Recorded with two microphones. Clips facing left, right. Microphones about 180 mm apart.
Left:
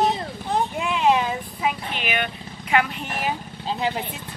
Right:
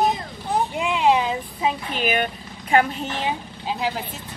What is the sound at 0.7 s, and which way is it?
Speech, 20° right (ahead or behind).